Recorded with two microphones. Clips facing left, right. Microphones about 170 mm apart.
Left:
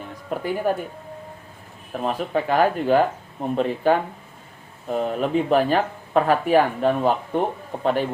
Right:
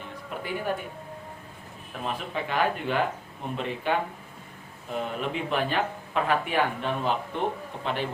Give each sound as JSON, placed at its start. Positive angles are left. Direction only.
{"t": 0.3, "sound": "a woman's voice", "side_deg": 40}
{"t": 1.9, "sound": "speech", "side_deg": 40}